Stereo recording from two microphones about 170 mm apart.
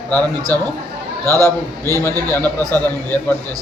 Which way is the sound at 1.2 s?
20° right (ahead or behind).